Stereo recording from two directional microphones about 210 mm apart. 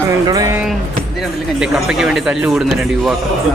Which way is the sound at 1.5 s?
5° right (ahead or behind).